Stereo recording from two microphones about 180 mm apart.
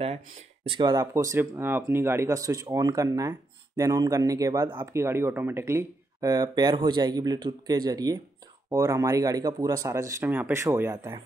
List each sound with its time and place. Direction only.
0.7 s speech: 25° right (ahead or behind)